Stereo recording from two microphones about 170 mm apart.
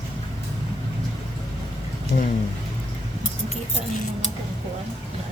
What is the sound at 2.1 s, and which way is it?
Speech, 45° left (ahead or behind).